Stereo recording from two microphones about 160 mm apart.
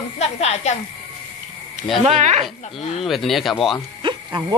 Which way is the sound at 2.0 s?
45° right (ahead or behind).